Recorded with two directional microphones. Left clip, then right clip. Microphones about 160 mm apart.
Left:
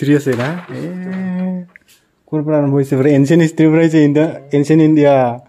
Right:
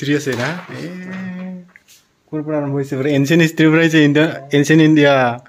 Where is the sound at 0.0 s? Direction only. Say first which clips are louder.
Left 4 dB; 55° left (ahead or behind).